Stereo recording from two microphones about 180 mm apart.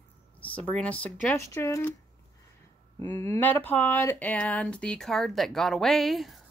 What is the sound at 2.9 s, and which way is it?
Speech, 15° left (ahead or behind).